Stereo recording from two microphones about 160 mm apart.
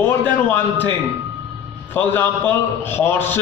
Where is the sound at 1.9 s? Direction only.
10° left (ahead or behind).